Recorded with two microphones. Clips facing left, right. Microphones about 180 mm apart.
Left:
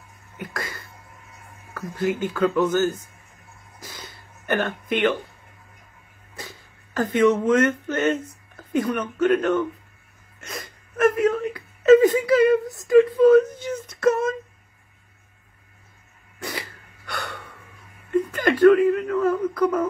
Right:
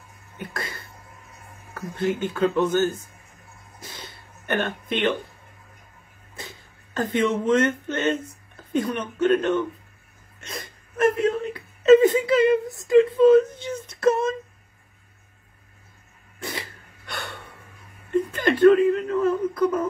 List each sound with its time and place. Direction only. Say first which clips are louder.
0.4 s speech: left 1 dB; 30° right (ahead or behind)
3.8 s a sound: even; 25° right (ahead or behind)
6.3 s speech: left 1 dB; 25° right (ahead or behind)
10.4 s whimper: left 1 dB; 30° right (ahead or behind)
16.3 s throat clearing: left 1 dB; 25° right (ahead or behind)
18.1 s whimper: left 1 dB; 25° right (ahead or behind)